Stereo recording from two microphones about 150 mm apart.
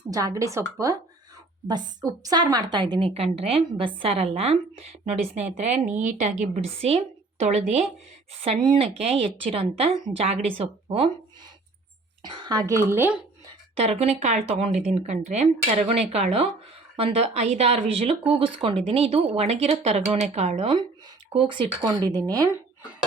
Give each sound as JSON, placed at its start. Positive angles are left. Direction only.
{"t": 0.1, "sound": "a woman's voice", "side_deg": -25}
{"t": 1.6, "sound": "a woman's voice", "side_deg": -30}
{"t": 3.2, "sound": "a woman's voice", "side_deg": -40}
{"t": 8.6, "sound": "a woman's voice", "side_deg": -30}
{"t": 12.2, "sound": "a woman's voice", "side_deg": -30}
{"t": 13.7, "sound": "a woman's voice", "side_deg": -45}